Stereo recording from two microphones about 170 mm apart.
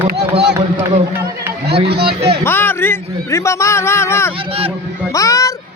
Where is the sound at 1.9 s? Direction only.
70° right (ahead or behind).